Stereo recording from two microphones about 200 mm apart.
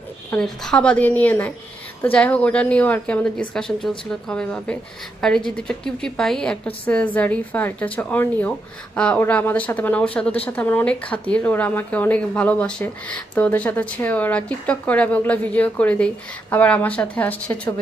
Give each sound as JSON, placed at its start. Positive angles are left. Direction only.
{"t": 0.3, "sound": "speech", "side_deg": 5}